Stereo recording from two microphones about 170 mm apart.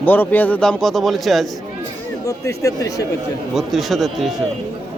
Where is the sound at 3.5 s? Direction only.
Centre (ahead or behind).